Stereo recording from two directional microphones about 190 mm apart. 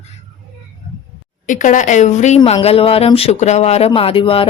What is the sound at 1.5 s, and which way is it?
A woman's voice, 40° left (ahead or behind).